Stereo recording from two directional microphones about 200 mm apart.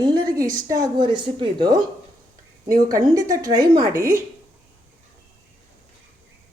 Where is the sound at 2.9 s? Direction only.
15° right (ahead or behind).